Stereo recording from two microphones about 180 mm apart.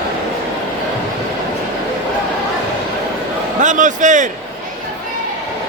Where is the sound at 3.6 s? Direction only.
45° right (ahead or behind).